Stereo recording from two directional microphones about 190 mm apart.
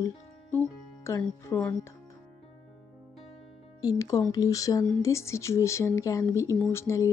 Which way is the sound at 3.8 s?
20° left (ahead or behind).